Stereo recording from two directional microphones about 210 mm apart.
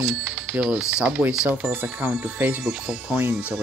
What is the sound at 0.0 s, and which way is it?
Speech, centre (ahead or behind).